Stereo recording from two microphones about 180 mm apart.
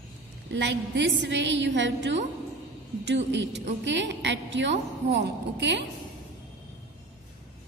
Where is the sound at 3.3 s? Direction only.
85° right.